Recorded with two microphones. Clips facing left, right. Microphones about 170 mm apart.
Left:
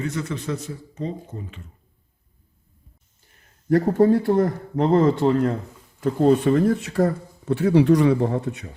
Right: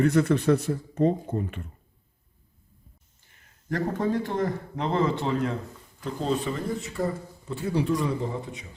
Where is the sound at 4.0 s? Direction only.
45° left (ahead or behind).